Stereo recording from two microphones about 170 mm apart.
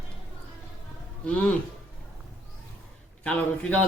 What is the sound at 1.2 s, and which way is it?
Speech, 10° left (ahead or behind).